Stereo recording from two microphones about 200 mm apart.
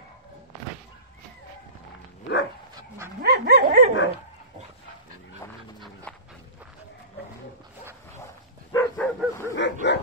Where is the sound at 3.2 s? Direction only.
55° right (ahead or behind).